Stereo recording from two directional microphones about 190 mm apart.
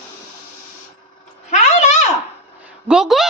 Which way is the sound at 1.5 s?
35° left (ahead or behind).